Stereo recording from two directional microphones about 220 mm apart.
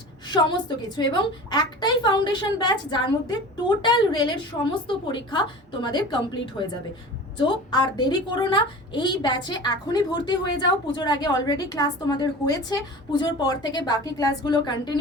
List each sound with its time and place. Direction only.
0.3 s a woman's voice: 20° left (ahead or behind)